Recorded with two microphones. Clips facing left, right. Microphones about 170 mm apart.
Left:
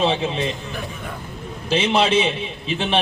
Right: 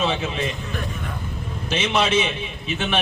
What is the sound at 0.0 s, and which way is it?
Speech, 30° left (ahead or behind).